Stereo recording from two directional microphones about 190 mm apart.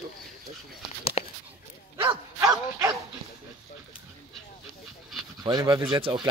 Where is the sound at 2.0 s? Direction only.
25° right (ahead or behind).